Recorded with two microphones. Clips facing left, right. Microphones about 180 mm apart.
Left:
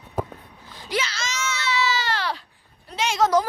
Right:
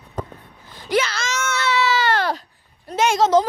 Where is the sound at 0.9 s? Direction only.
55° right (ahead or behind).